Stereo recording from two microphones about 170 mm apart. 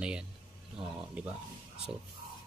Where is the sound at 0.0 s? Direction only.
5° right (ahead or behind).